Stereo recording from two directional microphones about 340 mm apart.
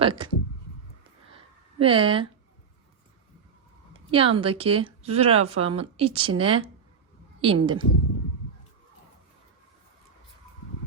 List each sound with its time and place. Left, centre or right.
0.0 s speech: centre
1.8 s speech: centre
4.1 s speech: centre